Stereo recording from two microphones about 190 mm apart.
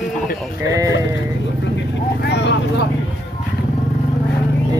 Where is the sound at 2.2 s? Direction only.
65° left (ahead or behind).